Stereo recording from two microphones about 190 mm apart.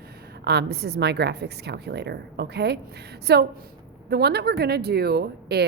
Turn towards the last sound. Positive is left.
turn(degrees=-60)  # may be behind; listen again after turning